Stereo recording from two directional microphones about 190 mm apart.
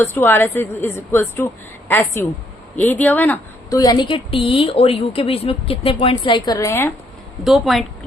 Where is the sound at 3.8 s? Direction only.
20° left (ahead or behind).